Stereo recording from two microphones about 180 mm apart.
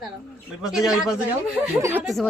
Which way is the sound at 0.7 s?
Centre (ahead or behind).